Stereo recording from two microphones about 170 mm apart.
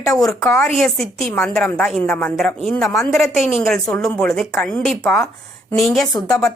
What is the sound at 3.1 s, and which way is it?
A woman's voice, centre (ahead or behind).